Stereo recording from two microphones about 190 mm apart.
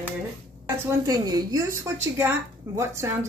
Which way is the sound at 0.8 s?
20° right (ahead or behind).